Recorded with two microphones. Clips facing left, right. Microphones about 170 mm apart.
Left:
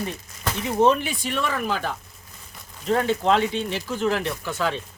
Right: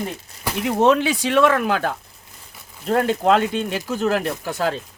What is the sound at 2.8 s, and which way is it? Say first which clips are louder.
Speech: right 3 dB; 50° right (ahead or behind).